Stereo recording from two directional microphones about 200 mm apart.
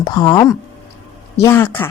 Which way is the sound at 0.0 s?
20° left (ahead or behind).